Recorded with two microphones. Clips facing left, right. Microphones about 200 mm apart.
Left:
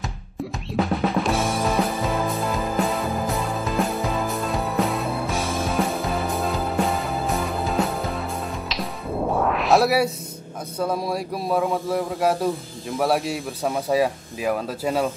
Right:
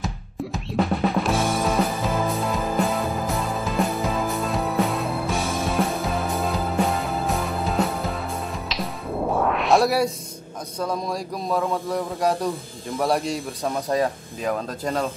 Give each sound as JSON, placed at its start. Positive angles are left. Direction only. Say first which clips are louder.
{"t": 0.7, "sound": "music", "louder": "even", "side_deg": 0}
{"t": 10.8, "sound": "speech", "louder": "left 2 dB", "side_deg": 5}